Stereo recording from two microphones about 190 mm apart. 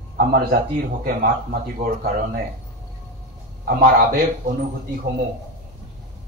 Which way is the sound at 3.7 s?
50° right (ahead or behind).